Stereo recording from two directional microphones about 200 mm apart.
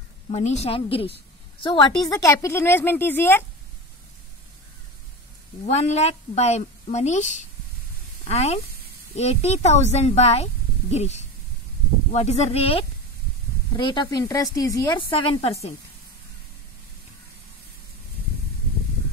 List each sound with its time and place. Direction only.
0.3 s a woman's voice: 35° left (ahead or behind); by 3.4 s 10° left (ahead or behind)
5.7 s a woman's voice: 35° left (ahead or behind)